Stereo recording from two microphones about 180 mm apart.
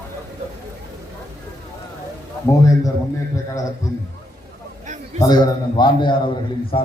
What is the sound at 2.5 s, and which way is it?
Speech, 20° left (ahead or behind).